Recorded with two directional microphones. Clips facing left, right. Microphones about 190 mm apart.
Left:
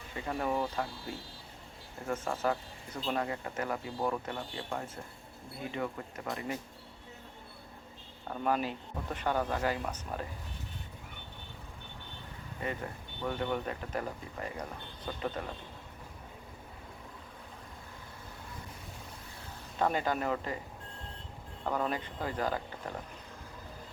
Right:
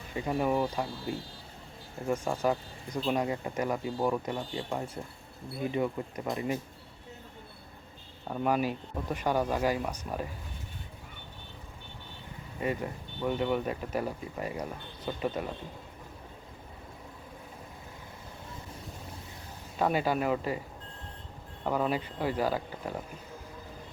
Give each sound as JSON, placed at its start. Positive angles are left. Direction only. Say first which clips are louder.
{"t": 0.3, "sound": "speech", "louder": "right 4 dB", "side_deg": -10}
{"t": 2.0, "sound": "speech", "louder": "right 4 dB", "side_deg": -15}
{"t": 8.3, "sound": "speech", "louder": "right 3 dB", "side_deg": -10}
{"t": 12.6, "sound": "speech", "louder": "right 5 dB", "side_deg": -15}
{"t": 19.8, "sound": "speech", "louder": "right 3 dB", "side_deg": -10}
{"t": 21.6, "sound": "speech", "louder": "right 4 dB", "side_deg": -10}